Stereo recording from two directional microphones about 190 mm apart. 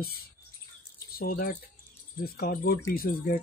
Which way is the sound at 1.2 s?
50° left (ahead or behind).